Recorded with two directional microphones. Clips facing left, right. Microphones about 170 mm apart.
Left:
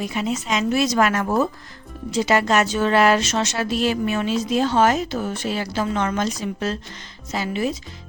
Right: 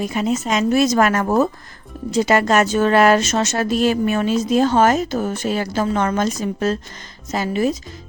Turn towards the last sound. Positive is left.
turn(degrees=-45)  # may be behind; listen again after turning